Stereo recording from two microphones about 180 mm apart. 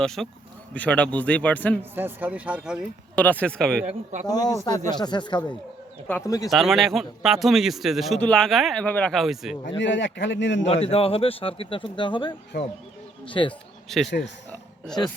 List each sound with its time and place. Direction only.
0.0 s a man's voice: centre (ahead or behind)
1.8 s speech: 10° right (ahead or behind)
3.2 s a man's voice: 10° left (ahead or behind)
4.3 s speech: 20° left (ahead or behind)
6.1 s a man's voice: 15° left (ahead or behind)
6.5 s a man's voice: centre (ahead or behind)
9.6 s a man's voice: 90° left
10.7 s speech: 35° left (ahead or behind)
12.5 s speech: 65° left (ahead or behind)
13.2 s speech: 30° left (ahead or behind)
13.9 s a man's voice: centre (ahead or behind)